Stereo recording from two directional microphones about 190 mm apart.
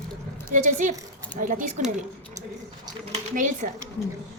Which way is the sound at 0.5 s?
40° right (ahead or behind).